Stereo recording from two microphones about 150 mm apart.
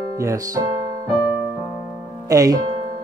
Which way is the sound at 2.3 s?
25° right (ahead or behind).